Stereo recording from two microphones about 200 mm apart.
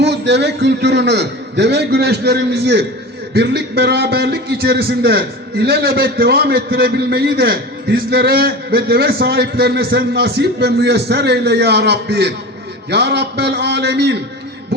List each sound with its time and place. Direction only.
0.0 s a man's voice: 60° right (ahead or behind)